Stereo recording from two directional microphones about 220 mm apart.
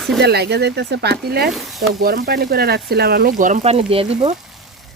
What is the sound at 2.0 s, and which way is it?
Speech, 45° right (ahead or behind).